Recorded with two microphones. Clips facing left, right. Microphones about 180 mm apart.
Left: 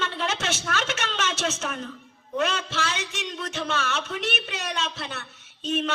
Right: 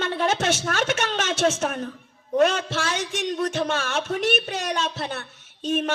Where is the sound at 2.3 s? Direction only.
45° right (ahead or behind).